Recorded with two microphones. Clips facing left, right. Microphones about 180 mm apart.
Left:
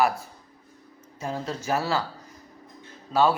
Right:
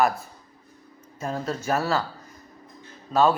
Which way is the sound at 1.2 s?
15° left (ahead or behind).